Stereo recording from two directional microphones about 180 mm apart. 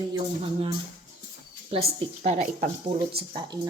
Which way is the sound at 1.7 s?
35° right (ahead or behind).